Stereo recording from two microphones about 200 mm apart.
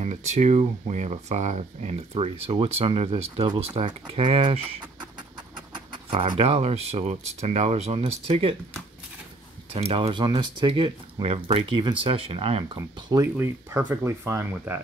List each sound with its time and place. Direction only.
0.0 s speech: 35° right (ahead or behind)
9.8 s speech: 30° right (ahead or behind)
12.7 s speech: 15° right (ahead or behind)